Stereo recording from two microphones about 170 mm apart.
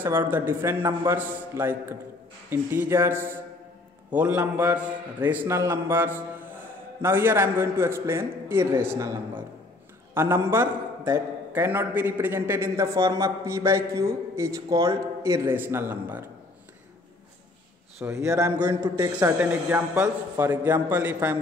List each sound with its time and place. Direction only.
0.0 s a man's voice: 15° right (ahead or behind)
10.1 s a man's voice: 15° right (ahead or behind)
18.0 s a man's voice: 15° right (ahead or behind)